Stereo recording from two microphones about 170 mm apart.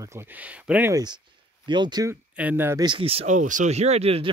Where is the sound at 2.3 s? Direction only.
10° right (ahead or behind).